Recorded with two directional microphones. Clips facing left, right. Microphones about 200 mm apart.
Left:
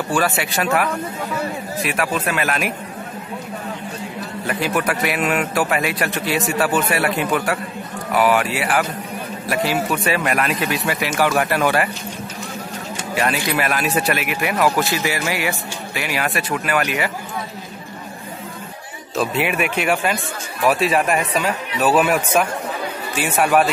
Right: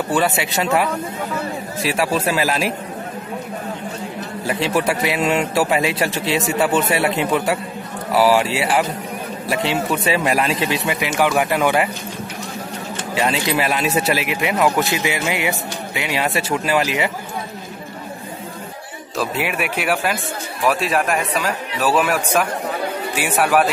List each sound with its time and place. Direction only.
0.1 s speech: 25° right (ahead or behind)
1.8 s speech: 30° right (ahead or behind)
4.5 s speech: 25° right (ahead or behind)
13.1 s speech: 25° right (ahead or behind)
19.1 s speech: centre (ahead or behind)